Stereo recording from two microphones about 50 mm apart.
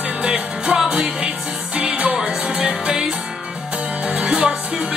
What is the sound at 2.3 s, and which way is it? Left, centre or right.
Music, centre.